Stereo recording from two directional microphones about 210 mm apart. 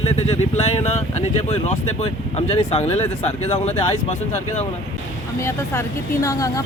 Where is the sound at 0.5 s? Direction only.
30° left (ahead or behind).